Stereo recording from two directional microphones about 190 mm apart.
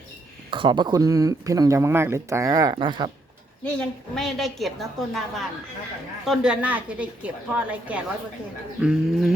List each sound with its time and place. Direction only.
0.5 s speech: 25° right (ahead or behind)
3.6 s a woman's voice: 5° left (ahead or behind)